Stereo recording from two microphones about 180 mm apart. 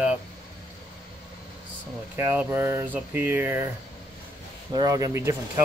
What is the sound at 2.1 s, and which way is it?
Speech, 15° right (ahead or behind).